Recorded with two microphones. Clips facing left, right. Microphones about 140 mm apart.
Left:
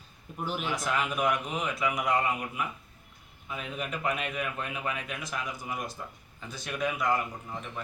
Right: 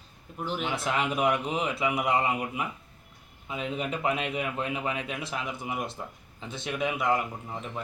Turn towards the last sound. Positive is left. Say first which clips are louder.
# right 2 dB
turn(degrees=-20)  # may be behind; listen again after turning